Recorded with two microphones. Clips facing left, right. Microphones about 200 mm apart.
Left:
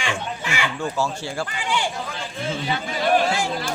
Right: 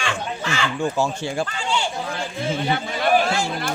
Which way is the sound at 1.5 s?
15° left (ahead or behind).